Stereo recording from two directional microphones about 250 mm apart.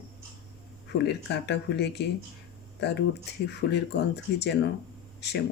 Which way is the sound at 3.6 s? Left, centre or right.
Left.